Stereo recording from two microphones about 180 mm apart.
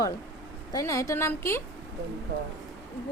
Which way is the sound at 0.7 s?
20° left (ahead or behind).